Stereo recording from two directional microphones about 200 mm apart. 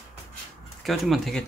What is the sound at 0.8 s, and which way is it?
Speech, centre (ahead or behind).